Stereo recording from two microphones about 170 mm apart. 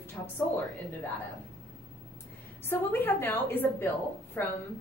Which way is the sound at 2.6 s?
15° left (ahead or behind).